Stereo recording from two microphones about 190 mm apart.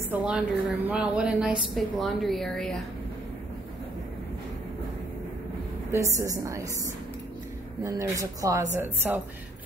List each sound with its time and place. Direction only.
0.1 s a woman's voice: 5° right (ahead or behind)
5.9 s a woman's voice: 15° right (ahead or behind)
7.8 s a woman's voice: 15° right (ahead or behind)